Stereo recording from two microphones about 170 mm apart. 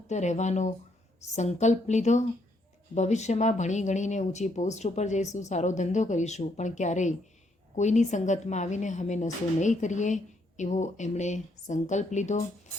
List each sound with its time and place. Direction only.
0.1 s speech: 45° left (ahead or behind)